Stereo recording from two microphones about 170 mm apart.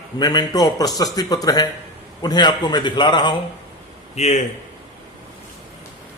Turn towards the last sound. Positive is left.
turn(degrees=40)  # may be behind; listen again after turning